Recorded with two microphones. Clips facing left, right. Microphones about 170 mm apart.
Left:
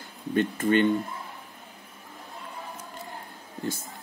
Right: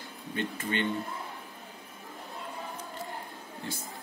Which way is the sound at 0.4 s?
50° left (ahead or behind).